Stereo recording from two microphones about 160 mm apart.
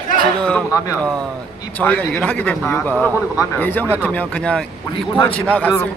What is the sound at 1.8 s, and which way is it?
A man's voice, 10° left (ahead or behind).